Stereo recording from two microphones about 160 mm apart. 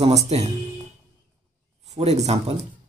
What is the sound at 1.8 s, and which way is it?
Speech, 45° right (ahead or behind).